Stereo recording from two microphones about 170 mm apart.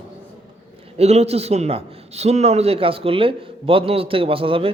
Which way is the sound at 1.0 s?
40° right (ahead or behind).